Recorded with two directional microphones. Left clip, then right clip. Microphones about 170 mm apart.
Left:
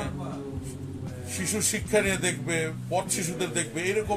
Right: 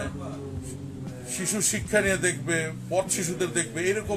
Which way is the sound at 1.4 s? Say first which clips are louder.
Right 1 dB; 20° right (ahead or behind).